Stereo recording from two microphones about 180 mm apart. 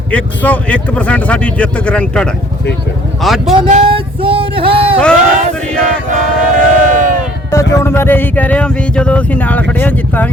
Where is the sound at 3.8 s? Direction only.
30° right (ahead or behind).